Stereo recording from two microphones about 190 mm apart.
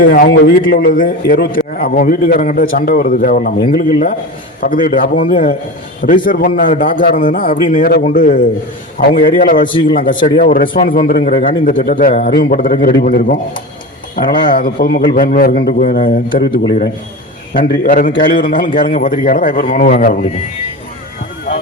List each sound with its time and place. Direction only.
0.0 s a man's voice: 50° left (ahead or behind)